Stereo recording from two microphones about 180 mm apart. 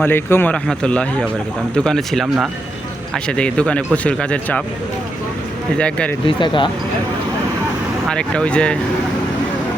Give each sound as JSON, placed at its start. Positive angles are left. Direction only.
{"t": 0.0, "sound": "speech", "side_deg": 10}
{"t": 5.7, "sound": "speech", "side_deg": 5}
{"t": 6.2, "sound": "speech", "side_deg": 25}
{"t": 8.1, "sound": "speech", "side_deg": 5}